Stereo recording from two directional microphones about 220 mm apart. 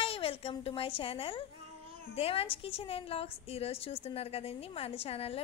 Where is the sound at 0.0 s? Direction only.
25° left (ahead or behind).